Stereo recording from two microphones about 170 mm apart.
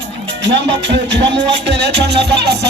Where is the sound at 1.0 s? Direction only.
90° right.